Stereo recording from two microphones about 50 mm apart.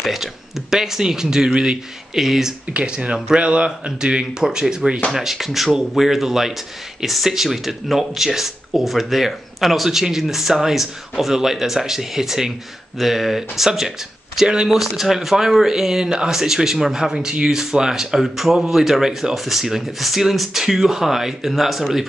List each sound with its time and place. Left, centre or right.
0.0 s a man's voice: centre
2.1 s speech: centre
2.7 s a man's voice: right; by 22.0 s centre